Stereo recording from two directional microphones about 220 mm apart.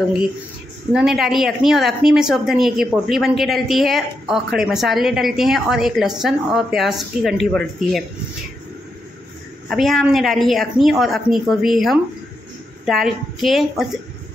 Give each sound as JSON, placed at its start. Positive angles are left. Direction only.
{"t": 0.9, "sound": "speech", "side_deg": 0}
{"t": 9.7, "sound": "speech", "side_deg": 0}